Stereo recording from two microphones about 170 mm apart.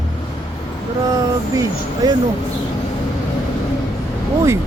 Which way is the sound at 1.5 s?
20° right (ahead or behind).